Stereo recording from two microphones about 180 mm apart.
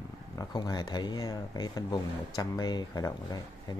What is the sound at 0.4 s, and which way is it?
Speech, 20° left (ahead or behind).